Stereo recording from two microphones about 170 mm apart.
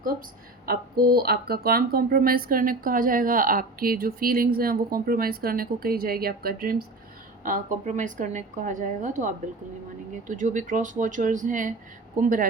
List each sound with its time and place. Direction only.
0.6 s a woman's voice: 60° right (ahead or behind)